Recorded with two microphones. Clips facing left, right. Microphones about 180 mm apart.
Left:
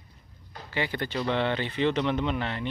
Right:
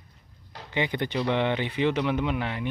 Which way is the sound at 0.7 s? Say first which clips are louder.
Right 3 dB; 20° right (ahead or behind).